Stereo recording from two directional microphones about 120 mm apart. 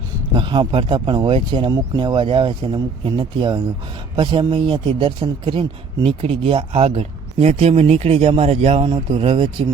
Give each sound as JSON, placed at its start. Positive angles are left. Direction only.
{"t": 0.3, "sound": "speech", "side_deg": -40}
{"t": 1.7, "sound": "speech", "side_deg": -35}
{"t": 9.1, "sound": "speech", "side_deg": -45}